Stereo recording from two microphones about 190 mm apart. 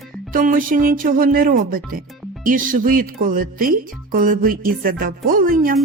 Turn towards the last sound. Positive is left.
turn(degrees=-50)  # may be behind; listen again after turning